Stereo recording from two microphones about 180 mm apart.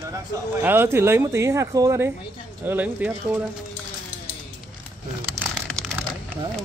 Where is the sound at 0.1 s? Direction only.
15° right (ahead or behind).